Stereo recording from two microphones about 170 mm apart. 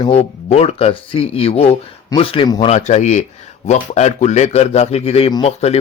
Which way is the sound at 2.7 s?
40° left (ahead or behind).